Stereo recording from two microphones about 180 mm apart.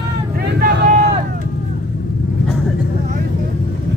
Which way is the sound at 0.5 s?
60° right (ahead or behind).